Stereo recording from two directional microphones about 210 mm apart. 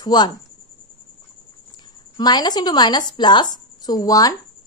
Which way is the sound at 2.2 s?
20° left (ahead or behind).